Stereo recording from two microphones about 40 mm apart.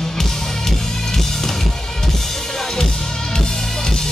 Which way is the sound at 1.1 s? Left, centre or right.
Centre.